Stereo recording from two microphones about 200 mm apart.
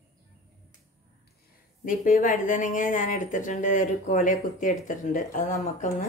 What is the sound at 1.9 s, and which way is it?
Speech, 40° left (ahead or behind).